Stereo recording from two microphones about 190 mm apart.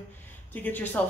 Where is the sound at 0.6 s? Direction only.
10° left (ahead or behind).